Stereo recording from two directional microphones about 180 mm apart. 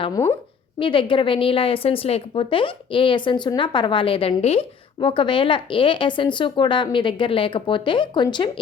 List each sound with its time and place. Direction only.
0.0 s speech: 20° left (ahead or behind)